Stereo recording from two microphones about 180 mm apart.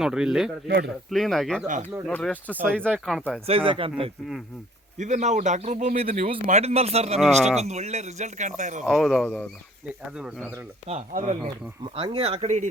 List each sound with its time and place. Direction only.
0.0 s speech: 5° right (ahead or behind)
3.4 s speech: 30° right (ahead or behind)
8.8 s speech: centre (ahead or behind)
10.2 s speech: centre (ahead or behind)
10.8 s speech: 40° right (ahead or behind)